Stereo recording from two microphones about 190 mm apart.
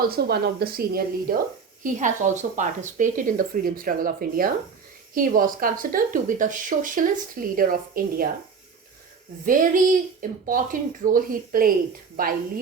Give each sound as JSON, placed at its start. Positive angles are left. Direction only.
{"t": 0.1, "sound": "speech", "side_deg": -55}
{"t": 1.8, "sound": "speech", "side_deg": -40}
{"t": 9.5, "sound": "speech", "side_deg": -45}